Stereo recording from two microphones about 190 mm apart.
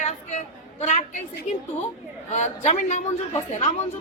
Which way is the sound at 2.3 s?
40° left (ahead or behind).